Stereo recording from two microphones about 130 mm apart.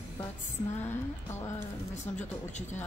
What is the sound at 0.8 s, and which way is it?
Speech, 20° left (ahead or behind).